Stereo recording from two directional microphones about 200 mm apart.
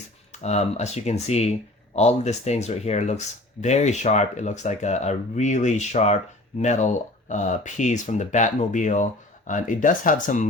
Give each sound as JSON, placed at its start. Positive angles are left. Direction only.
{"t": 0.4, "sound": "speech", "side_deg": 35}